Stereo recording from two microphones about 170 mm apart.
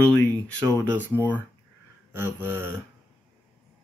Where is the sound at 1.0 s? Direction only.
10° left (ahead or behind).